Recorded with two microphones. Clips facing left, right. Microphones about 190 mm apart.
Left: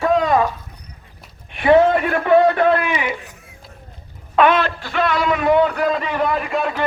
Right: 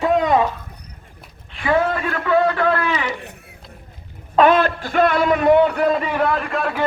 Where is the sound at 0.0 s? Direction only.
20° right (ahead or behind).